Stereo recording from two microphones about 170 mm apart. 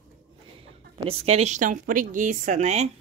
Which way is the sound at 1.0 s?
40° right (ahead or behind).